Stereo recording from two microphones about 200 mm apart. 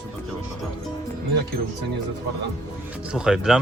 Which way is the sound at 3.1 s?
5° right (ahead or behind).